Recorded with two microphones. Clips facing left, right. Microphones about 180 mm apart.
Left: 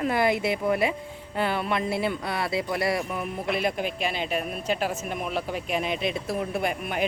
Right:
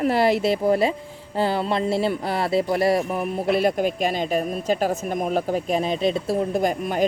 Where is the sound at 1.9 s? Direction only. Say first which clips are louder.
Right 5 dB; 30° right (ahead or behind).